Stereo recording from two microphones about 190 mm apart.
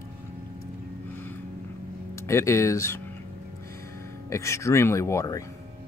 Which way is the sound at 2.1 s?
15° left (ahead or behind).